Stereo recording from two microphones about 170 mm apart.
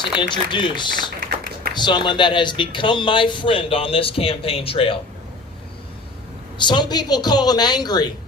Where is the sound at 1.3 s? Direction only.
65° right (ahead or behind).